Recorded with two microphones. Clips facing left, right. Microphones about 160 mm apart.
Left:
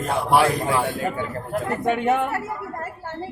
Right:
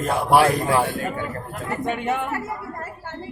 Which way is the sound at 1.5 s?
60° left (ahead or behind).